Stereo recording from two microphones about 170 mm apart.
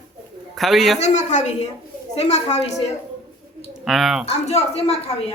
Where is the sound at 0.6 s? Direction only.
Centre (ahead or behind).